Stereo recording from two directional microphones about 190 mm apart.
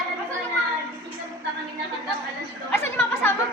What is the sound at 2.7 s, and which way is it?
Chatter, 10° left (ahead or behind).